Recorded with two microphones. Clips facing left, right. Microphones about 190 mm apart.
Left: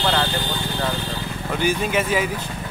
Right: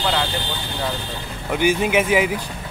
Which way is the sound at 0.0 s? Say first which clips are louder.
Left 1 dB; 5° right (ahead or behind).